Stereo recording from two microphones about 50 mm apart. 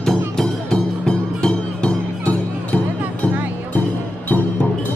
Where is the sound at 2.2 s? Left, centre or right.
Left.